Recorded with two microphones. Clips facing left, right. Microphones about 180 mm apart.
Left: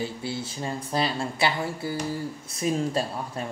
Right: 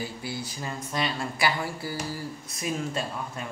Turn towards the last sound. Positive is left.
turn(degrees=35)  # may be behind; listen again after turning